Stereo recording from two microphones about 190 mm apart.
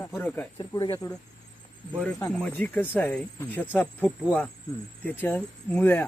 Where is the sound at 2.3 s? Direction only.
5° left (ahead or behind).